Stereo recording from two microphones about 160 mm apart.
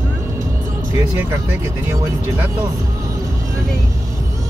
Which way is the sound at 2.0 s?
20° right (ahead or behind).